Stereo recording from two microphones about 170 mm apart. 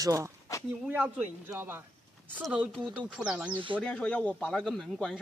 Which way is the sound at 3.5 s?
30° right (ahead or behind).